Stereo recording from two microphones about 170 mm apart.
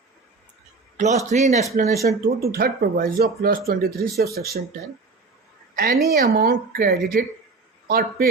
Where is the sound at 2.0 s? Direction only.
55° right (ahead or behind).